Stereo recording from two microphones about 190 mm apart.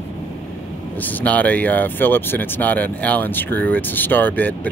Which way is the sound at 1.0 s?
10° left (ahead or behind).